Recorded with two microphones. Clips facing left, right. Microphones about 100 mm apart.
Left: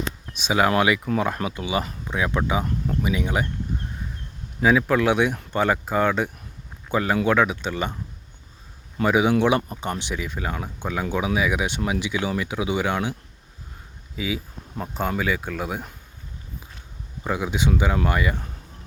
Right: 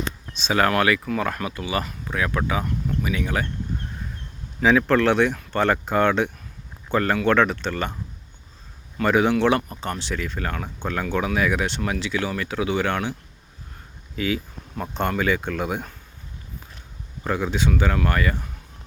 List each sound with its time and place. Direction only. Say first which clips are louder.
0.3 s speech: even; 15° left (ahead or behind)
4.6 s speech: right 1 dB; 5° left (ahead or behind)
9.0 s speech: even; 10° left (ahead or behind)
14.2 s speech: right 3 dB; 5° left (ahead or behind)
17.2 s speech: even; 10° left (ahead or behind)